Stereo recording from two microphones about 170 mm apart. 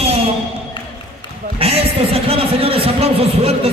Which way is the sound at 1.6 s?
35° right (ahead or behind).